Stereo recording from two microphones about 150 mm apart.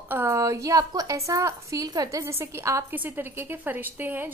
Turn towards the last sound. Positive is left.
turn(degrees=-15)  # may be behind; listen again after turning